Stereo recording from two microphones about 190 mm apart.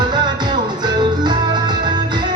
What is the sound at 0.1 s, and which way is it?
Music, 25° right (ahead or behind).